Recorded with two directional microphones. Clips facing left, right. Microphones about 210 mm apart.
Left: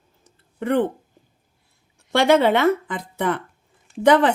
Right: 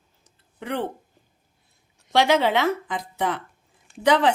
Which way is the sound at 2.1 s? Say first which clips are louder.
Left 4 dB; 55° left (ahead or behind).